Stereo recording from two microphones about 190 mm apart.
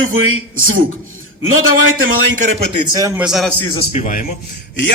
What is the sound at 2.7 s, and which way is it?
Speech, 20° right (ahead or behind).